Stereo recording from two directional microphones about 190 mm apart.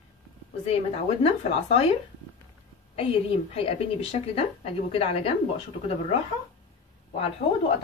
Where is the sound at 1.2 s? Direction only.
30° left (ahead or behind).